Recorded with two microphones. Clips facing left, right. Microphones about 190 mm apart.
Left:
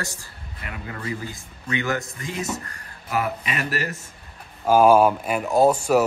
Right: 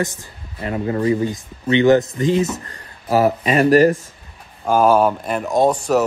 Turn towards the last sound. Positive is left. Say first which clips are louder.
# right 1 dB
turn(degrees=10)  # may be behind; listen again after turning